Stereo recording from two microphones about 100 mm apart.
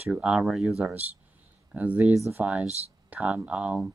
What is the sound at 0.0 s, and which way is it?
Speech, 10° right (ahead or behind).